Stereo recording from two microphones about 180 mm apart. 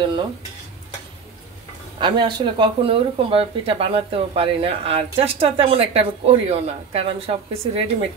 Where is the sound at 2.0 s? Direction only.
25° right (ahead or behind).